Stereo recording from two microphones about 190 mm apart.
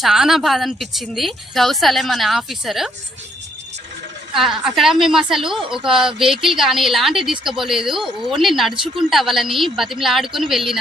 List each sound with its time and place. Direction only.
0.0 s a woman's voice: centre (ahead or behind)
4.4 s a woman's voice: centre (ahead or behind)
8.7 s speech: 25° right (ahead or behind)
9.0 s a woman's voice: centre (ahead or behind)